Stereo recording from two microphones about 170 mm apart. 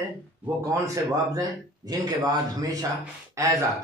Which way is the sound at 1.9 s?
20° right (ahead or behind).